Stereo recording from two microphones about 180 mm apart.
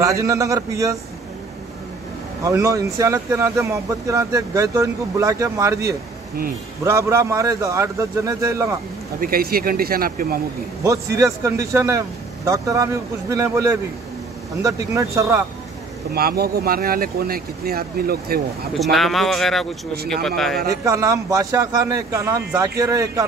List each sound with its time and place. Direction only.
0.0 s speech: 15° right (ahead or behind)
2.4 s speech: 15° right (ahead or behind)
9.2 s speech: 55° right (ahead or behind)
10.8 s speech: 15° right (ahead or behind)
16.1 s speech: 55° right (ahead or behind)
18.8 s speech: centre (ahead or behind)
20.8 s speech: 15° right (ahead or behind)